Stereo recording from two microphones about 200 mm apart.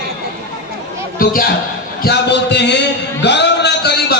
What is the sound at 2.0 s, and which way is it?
A man's voice, 60° left (ahead or behind).